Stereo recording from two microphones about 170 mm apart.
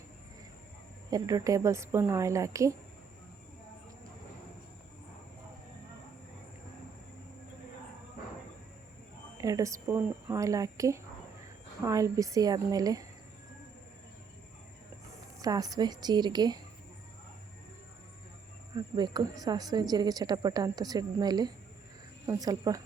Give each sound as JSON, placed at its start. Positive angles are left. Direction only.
{"t": 1.1, "sound": "a woman's voice", "side_deg": -20}
{"t": 9.4, "sound": "speech", "side_deg": -20}
{"t": 15.4, "sound": "speech", "side_deg": -20}
{"t": 18.7, "sound": "speech", "side_deg": -25}